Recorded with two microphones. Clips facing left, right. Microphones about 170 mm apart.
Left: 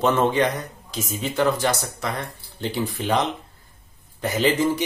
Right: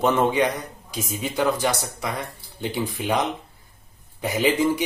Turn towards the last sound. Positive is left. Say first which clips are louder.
# even
turn(degrees=-10)  # may be behind; listen again after turning